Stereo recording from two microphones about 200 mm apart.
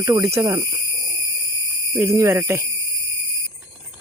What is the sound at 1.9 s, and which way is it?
Speech, 15° right (ahead or behind).